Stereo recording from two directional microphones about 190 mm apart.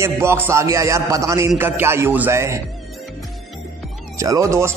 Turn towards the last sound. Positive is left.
turn(degrees=-15)  # may be behind; listen again after turning